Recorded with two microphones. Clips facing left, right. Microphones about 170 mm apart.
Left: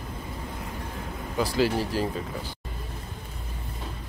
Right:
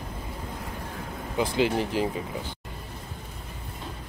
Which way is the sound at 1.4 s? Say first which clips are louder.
Even; 20° right (ahead or behind).